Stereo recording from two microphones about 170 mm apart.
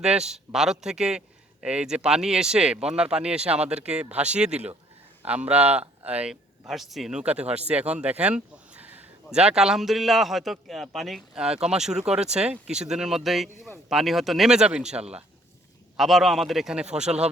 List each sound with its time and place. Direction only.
0.0 s speech: 5° right (ahead or behind)
4.5 s speech: 40° right (ahead or behind)
5.2 s speech: 5° right (ahead or behind)